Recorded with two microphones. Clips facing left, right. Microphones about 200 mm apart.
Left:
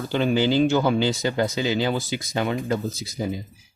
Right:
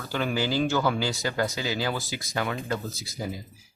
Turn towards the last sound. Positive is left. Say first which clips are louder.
# left 6 dB
turn(degrees=20)  # may be behind; listen again after turning